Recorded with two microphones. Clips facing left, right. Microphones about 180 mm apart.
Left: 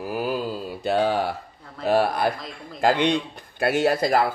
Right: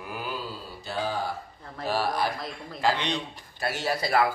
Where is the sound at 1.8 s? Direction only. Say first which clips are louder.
Left 6 dB; 60° left (ahead or behind).